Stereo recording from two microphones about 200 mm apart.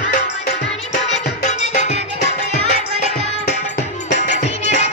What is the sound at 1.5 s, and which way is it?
Music, 35° left (ahead or behind).